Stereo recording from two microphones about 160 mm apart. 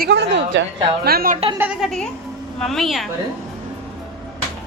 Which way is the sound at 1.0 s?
70° right (ahead or behind).